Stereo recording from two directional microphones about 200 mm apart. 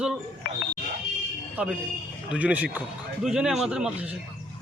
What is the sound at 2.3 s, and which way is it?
Speech, 5° right (ahead or behind).